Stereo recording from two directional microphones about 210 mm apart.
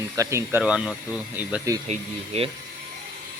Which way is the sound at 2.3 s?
30° right (ahead or behind).